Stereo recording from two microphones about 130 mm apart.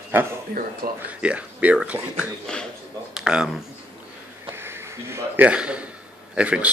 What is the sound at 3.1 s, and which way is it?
Speech, 5° right (ahead or behind).